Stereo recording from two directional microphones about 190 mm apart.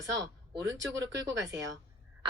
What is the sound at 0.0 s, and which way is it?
Speech, 20° right (ahead or behind).